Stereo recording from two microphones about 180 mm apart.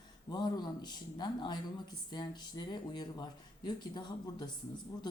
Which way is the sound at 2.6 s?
25° left (ahead or behind).